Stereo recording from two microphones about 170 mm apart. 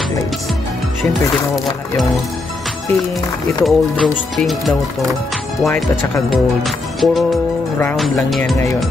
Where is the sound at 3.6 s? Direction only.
Centre (ahead or behind).